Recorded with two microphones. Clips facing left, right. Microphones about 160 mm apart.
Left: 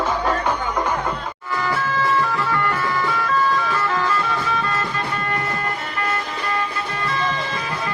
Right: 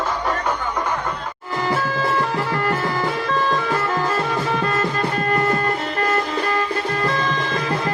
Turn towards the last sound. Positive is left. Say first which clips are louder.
# right 4 dB
turn(degrees=-45)  # may be behind; listen again after turning